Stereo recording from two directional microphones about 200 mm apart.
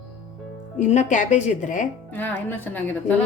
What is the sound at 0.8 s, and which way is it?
A woman's voice, 35° left (ahead or behind).